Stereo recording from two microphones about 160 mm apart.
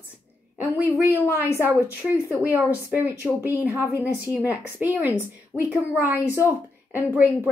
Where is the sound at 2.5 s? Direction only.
15° right (ahead or behind).